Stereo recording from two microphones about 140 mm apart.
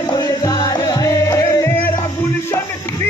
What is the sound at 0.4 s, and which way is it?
Music, 25° left (ahead or behind).